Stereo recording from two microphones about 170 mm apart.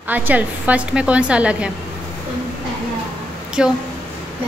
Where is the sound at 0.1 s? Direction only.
10° right (ahead or behind).